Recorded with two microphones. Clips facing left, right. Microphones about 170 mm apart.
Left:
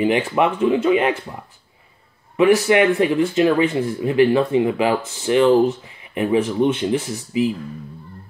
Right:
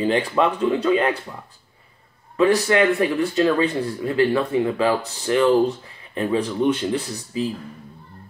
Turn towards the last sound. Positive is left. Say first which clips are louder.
# left 5 dB
turn(degrees=20)  # may be behind; listen again after turning